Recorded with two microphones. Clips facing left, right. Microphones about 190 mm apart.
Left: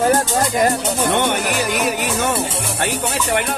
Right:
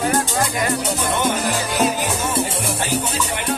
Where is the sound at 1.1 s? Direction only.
70° left (ahead or behind).